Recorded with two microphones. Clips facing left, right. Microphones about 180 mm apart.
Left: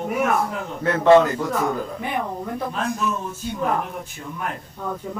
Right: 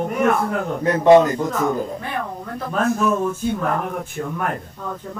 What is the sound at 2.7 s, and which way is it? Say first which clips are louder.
Speech: right 10 dB; 50° right (ahead or behind).